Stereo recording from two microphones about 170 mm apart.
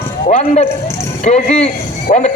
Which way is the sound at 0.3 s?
40° left (ahead or behind).